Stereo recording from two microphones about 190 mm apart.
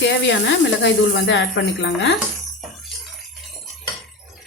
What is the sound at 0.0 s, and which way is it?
Speech, 70° left (ahead or behind).